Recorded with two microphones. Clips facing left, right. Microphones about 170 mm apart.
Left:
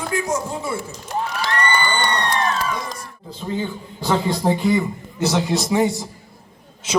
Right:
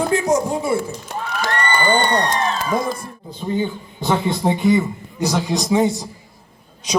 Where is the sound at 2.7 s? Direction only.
55° right (ahead or behind).